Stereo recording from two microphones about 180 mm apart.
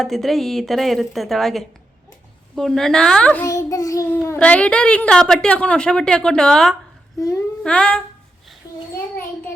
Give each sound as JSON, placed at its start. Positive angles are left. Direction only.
{"t": 0.0, "sound": "a child's voice", "side_deg": 0}
{"t": 7.2, "sound": "a child's voice", "side_deg": 20}
{"t": 7.6, "sound": "a child's voice", "side_deg": 5}